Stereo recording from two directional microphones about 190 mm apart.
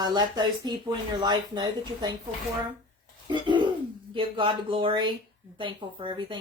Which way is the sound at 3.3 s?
25° right (ahead or behind).